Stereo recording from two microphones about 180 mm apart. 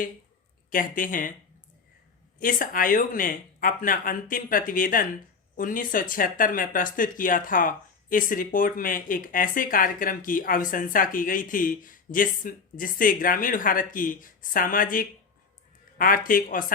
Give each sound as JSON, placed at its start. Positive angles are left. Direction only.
{"t": 0.7, "sound": "speech", "side_deg": 50}
{"t": 2.4, "sound": "speech", "side_deg": 50}